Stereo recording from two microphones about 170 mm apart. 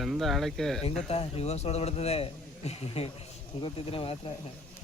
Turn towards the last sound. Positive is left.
turn(degrees=35)  # may be behind; listen again after turning